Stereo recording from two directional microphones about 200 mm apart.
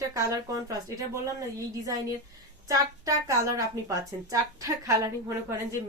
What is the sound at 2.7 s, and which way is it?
A woman's voice, 15° right (ahead or behind).